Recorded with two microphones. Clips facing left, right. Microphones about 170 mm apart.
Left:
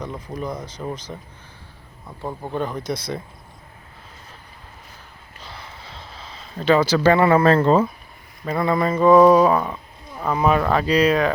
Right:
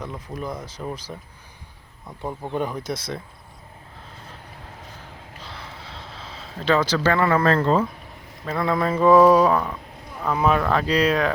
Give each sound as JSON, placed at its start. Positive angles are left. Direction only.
{"t": 0.0, "sound": "mantra", "side_deg": 0}
{"t": 5.4, "sound": "a sound", "side_deg": 0}
{"t": 8.4, "sound": "mantra", "side_deg": 0}